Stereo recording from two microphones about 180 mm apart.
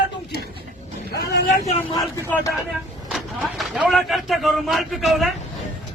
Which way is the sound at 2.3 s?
10° left (ahead or behind).